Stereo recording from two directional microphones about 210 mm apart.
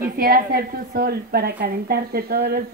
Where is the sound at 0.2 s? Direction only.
45° right (ahead or behind).